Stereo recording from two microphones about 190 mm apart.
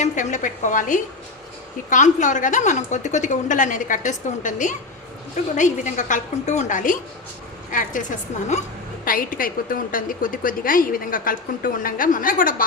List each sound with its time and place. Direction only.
0.0 s a woman's voice: 40° left (ahead or behind)
9.0 s a woman's voice: 50° left (ahead or behind)